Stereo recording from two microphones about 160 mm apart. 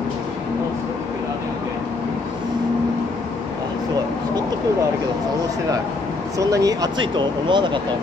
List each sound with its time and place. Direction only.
6.3 s speech: 20° right (ahead or behind)